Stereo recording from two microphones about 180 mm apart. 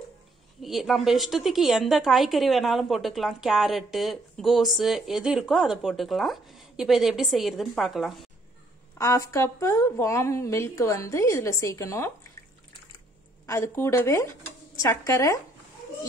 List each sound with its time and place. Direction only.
0.6 s a woman's voice: centre (ahead or behind)
8.9 s a woman's voice: 15° left (ahead or behind)
13.5 s a woman's voice: 15° left (ahead or behind)